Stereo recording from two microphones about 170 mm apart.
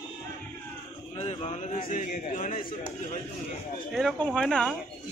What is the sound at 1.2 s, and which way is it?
Speech, 40° left (ahead or behind).